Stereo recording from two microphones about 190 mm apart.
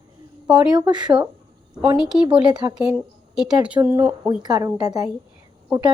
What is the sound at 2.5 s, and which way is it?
Speech, 20° right (ahead or behind).